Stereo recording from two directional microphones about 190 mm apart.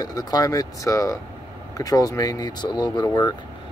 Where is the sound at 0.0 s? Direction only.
20° left (ahead or behind).